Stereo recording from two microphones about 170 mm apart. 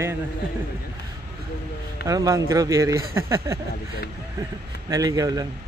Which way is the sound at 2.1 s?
20° right (ahead or behind).